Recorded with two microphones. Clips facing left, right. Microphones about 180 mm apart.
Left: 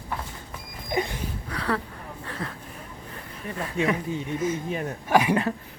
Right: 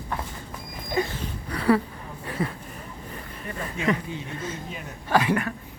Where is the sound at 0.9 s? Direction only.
15° left (ahead or behind).